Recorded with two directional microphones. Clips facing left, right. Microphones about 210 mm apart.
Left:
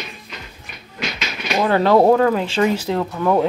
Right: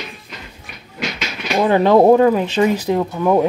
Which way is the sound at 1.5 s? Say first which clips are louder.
Right 2 dB; 15° right (ahead or behind).